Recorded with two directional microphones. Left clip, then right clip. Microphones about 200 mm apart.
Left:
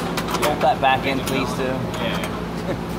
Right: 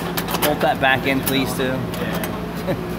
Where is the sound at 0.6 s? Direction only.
35° right (ahead or behind).